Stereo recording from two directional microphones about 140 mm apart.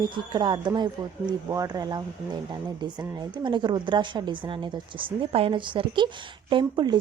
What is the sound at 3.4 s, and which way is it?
Speech, 35° right (ahead or behind).